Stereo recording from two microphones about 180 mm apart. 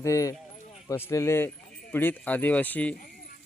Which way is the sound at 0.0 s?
15° left (ahead or behind).